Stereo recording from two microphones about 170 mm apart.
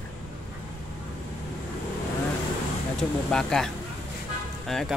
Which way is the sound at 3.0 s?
5° left (ahead or behind).